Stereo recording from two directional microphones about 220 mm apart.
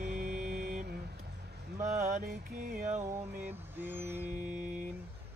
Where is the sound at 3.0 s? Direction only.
15° right (ahead or behind).